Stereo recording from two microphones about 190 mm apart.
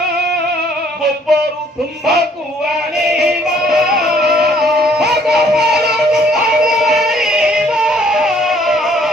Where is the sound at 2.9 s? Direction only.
Centre (ahead or behind).